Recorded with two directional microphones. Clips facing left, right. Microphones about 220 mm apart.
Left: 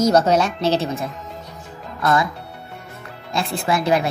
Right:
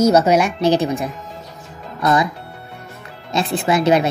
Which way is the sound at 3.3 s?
20° right (ahead or behind).